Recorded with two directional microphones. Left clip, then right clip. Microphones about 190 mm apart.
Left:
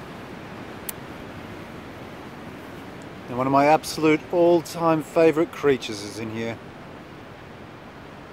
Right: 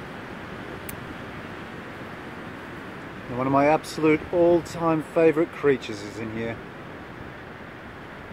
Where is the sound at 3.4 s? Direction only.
15° left (ahead or behind).